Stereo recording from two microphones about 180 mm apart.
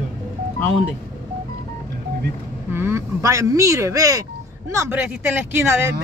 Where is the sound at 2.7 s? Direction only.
15° right (ahead or behind).